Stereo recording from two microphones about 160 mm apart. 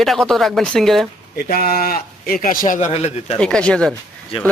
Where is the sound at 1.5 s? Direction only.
70° left (ahead or behind); by 3.3 s 45° left (ahead or behind).